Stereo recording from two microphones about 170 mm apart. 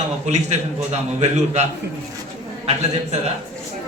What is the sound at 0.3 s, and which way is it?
Speech, 40° right (ahead or behind).